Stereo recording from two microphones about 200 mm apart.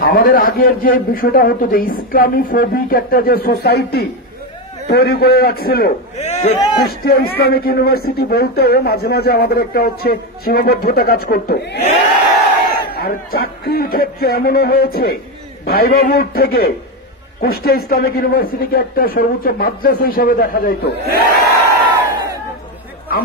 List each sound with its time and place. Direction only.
0.0 s speech: 50° left (ahead or behind)
6.1 s speech: 35° left (ahead or behind)
6.8 s a man's voice: 50° left (ahead or behind)